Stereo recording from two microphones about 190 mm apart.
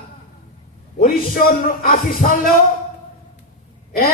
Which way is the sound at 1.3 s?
45° left (ahead or behind).